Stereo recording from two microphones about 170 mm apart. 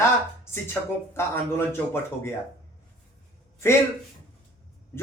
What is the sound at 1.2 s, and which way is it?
A man's voice, 15° left (ahead or behind).